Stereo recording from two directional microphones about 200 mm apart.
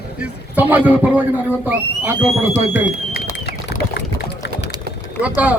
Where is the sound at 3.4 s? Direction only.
55° left (ahead or behind).